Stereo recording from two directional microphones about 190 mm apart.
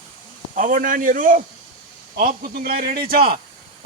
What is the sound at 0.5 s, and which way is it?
A man's voice, 45° right (ahead or behind).